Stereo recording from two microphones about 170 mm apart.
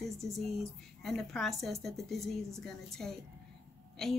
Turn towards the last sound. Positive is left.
turn(degrees=0)  # may be behind; listen again after turning